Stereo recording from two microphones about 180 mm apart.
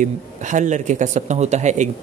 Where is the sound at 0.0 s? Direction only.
45° right (ahead or behind).